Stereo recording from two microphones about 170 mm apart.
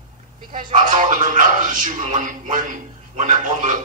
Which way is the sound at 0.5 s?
50° right (ahead or behind).